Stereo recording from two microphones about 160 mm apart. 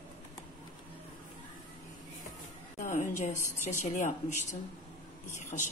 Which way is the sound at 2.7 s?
55° left (ahead or behind).